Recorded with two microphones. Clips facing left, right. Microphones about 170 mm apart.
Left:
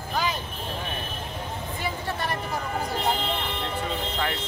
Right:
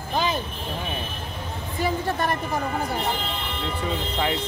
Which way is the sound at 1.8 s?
45° right (ahead or behind).